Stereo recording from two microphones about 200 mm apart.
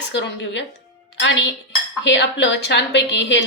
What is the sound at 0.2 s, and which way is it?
A woman's voice, 65° left (ahead or behind).